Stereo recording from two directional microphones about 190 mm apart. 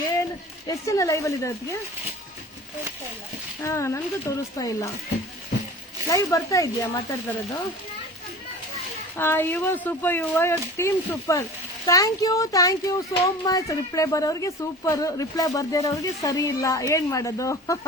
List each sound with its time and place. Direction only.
0.7 s speech: 15° left (ahead or behind)
3.6 s speech: 15° left (ahead or behind)
6.1 s speech: 15° left (ahead or behind)
9.1 s speech: 10° left (ahead or behind)